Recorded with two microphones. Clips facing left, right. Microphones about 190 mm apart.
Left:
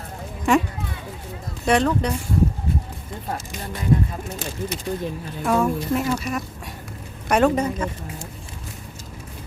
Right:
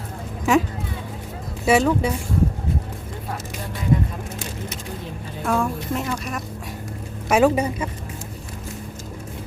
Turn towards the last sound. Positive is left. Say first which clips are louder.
# right 1 dB
turn(degrees=-10)  # may be behind; listen again after turning